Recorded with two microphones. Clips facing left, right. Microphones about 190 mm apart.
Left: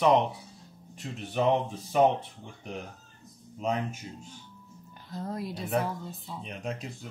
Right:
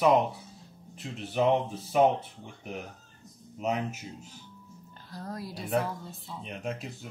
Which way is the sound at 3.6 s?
10° right (ahead or behind).